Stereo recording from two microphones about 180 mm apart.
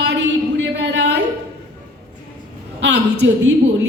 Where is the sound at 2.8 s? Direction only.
70° right (ahead or behind).